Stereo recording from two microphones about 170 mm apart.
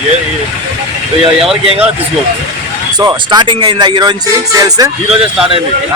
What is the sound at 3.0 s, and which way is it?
Speech, 20° right (ahead or behind).